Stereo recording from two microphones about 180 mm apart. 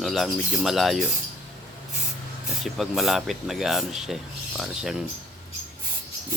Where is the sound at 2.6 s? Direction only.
Centre (ahead or behind).